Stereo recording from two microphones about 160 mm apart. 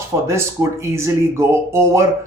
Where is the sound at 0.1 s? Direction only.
20° right (ahead or behind).